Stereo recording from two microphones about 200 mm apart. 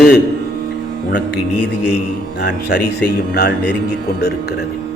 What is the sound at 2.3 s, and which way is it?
A man's voice, 55° left (ahead or behind).